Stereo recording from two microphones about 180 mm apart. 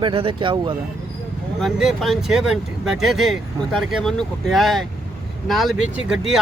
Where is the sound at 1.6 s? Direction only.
Centre (ahead or behind).